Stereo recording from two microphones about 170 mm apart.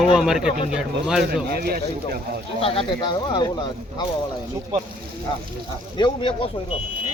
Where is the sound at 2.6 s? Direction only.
35° left (ahead or behind).